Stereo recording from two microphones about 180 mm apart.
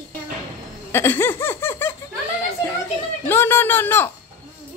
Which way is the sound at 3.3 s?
10° left (ahead or behind).